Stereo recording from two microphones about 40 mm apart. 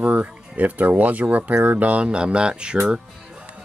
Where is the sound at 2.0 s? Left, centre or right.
Right.